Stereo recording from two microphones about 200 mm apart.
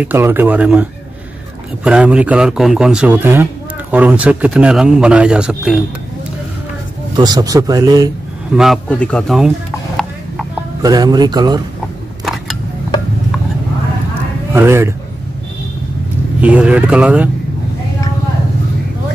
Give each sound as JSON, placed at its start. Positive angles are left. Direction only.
{"t": 0.0, "sound": "speech", "side_deg": -10}
{"t": 1.9, "sound": "a man's voice", "side_deg": -5}
{"t": 7.2, "sound": "speech", "side_deg": -20}
{"t": 8.5, "sound": "a man's voice", "side_deg": 0}
{"t": 10.8, "sound": "speech", "side_deg": -20}
{"t": 14.5, "sound": "speech", "side_deg": -10}
{"t": 16.3, "sound": "speech", "side_deg": -5}